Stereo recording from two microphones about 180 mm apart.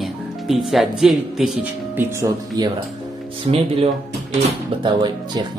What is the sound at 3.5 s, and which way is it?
Speech, 35° right (ahead or behind).